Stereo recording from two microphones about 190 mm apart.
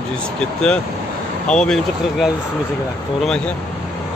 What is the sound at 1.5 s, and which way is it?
Speech, 5° left (ahead or behind).